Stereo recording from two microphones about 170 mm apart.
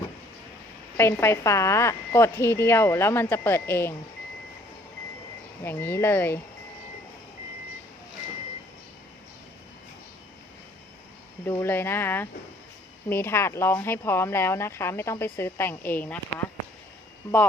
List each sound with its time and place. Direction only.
0.9 s speech: 15° left (ahead or behind)
5.6 s speech: 15° left (ahead or behind)
11.6 s speech: 15° left (ahead or behind)